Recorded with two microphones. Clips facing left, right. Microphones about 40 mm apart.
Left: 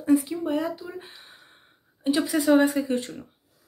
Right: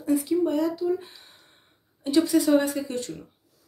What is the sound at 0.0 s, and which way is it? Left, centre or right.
Speech, centre.